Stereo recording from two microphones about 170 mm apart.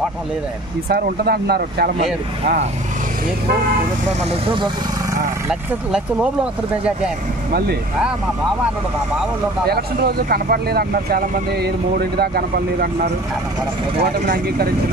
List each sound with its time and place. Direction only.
0.8 s speech: 65° right (ahead or behind)
2.4 s speech: 50° right (ahead or behind)
4.2 s speech: 35° right (ahead or behind)
5.5 s speech: 5° right (ahead or behind)
9.7 s speech: 65° right (ahead or behind)
14.2 s speech: 60° right (ahead or behind)